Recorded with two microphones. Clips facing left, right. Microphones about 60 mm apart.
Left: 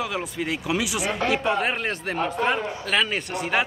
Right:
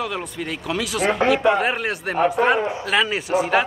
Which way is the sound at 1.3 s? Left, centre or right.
Centre.